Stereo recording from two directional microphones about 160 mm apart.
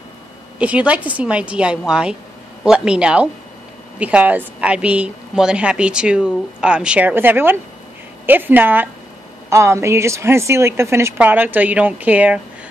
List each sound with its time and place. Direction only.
0.6 s a woman's voice: 10° right (ahead or behind)